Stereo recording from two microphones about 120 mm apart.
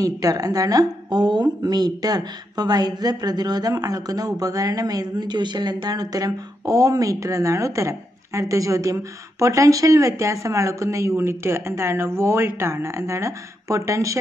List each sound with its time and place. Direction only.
0.0 s a woman's voice: 30° right (ahead or behind)